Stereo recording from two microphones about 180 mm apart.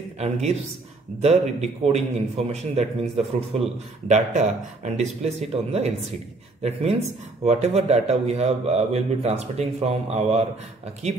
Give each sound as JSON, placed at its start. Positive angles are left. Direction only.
{"t": 1.2, "sound": "speech", "side_deg": -35}